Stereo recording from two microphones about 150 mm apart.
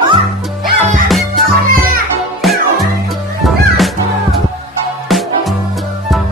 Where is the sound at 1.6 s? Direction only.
75° right (ahead or behind).